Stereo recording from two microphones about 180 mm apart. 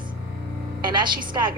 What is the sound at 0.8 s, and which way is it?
Speech, 25° right (ahead or behind).